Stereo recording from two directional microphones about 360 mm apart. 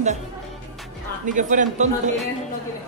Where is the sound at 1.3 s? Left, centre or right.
Right.